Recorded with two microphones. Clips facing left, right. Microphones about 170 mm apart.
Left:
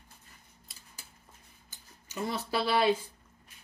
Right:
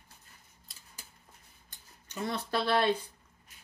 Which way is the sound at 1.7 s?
5° left (ahead or behind).